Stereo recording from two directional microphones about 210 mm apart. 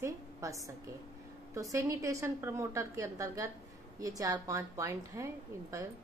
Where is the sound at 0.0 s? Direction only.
15° right (ahead or behind).